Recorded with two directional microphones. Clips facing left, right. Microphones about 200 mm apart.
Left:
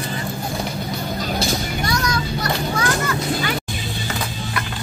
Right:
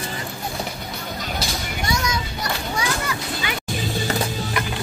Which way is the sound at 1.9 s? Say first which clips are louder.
Even; 25° right (ahead or behind).